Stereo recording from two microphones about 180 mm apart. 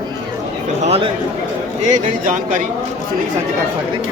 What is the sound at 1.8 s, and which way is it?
Speech, 45° right (ahead or behind).